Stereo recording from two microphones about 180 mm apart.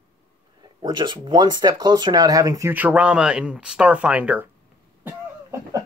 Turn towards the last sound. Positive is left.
turn(degrees=-15)  # may be behind; listen again after turning